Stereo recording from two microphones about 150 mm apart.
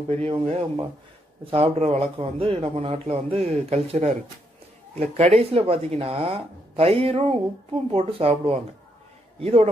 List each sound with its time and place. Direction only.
0.1 s a man's voice: 45° right (ahead or behind)